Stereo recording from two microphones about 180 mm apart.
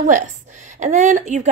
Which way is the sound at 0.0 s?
45° right (ahead or behind).